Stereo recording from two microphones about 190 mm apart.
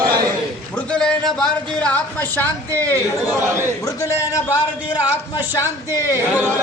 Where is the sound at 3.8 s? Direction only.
20° left (ahead or behind).